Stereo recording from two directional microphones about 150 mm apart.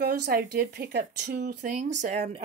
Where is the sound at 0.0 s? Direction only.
90° right.